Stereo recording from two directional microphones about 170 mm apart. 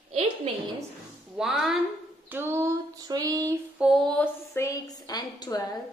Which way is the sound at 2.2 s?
10° right (ahead or behind).